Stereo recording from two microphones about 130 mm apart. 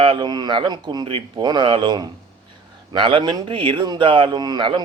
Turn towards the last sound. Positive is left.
turn(degrees=-35)  # may be behind; listen again after turning